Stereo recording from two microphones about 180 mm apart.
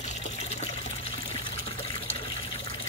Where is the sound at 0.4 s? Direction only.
35° left (ahead or behind).